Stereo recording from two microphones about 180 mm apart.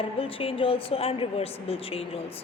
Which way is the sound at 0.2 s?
30° left (ahead or behind).